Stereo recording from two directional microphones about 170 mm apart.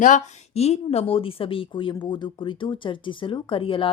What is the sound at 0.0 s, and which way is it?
Speech, 45° left (ahead or behind).